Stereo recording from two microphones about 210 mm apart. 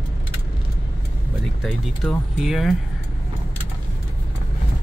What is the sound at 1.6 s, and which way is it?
Speech, centre (ahead or behind).